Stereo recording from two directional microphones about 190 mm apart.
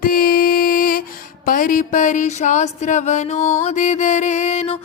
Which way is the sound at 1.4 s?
45° left (ahead or behind).